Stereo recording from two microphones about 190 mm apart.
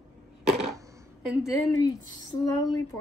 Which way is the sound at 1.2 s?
Centre (ahead or behind).